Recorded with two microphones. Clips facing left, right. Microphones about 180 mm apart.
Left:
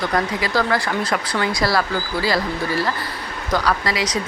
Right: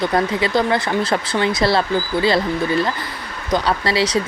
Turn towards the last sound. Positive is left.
turn(degrees=-30)  # may be behind; listen again after turning